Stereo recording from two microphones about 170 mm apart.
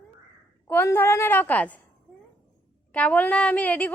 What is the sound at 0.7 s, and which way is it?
A woman's voice, 10° left (ahead or behind).